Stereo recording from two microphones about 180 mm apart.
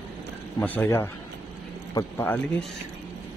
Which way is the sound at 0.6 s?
10° left (ahead or behind).